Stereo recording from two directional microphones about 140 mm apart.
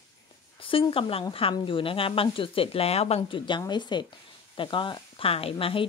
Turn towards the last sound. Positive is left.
turn(degrees=40)  # may be behind; listen again after turning